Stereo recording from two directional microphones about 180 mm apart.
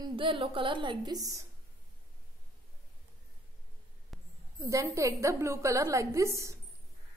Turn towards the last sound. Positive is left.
turn(degrees=-15)  # may be behind; listen again after turning